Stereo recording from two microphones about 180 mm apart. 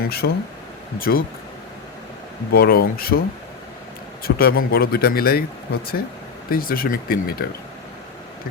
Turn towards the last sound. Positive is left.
turn(degrees=55)  # may be behind; listen again after turning